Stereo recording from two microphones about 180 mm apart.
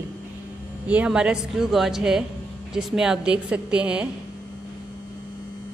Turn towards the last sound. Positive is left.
turn(degrees=-5)  # may be behind; listen again after turning